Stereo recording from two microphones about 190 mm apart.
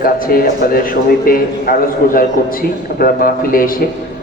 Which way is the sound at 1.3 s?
50° left (ahead or behind).